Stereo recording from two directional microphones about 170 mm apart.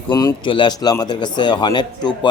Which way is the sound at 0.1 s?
25° left (ahead or behind).